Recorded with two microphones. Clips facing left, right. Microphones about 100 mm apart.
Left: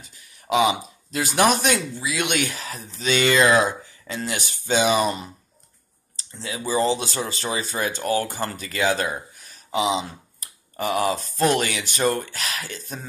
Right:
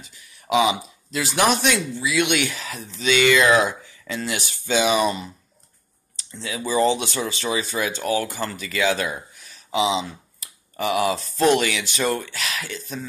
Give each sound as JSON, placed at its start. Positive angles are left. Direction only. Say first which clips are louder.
{"t": 0.0, "sound": "speech", "louder": "right 2 dB", "side_deg": 40}
{"t": 6.1, "sound": "a sound", "louder": "right 1 dB", "side_deg": 35}
{"t": 6.7, "sound": "speech", "louder": "right 2 dB", "side_deg": 35}